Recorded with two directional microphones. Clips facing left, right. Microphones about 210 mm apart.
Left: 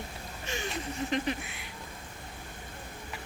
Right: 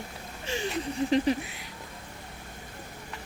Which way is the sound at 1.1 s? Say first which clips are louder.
Right 8 dB; 35° right (ahead or behind).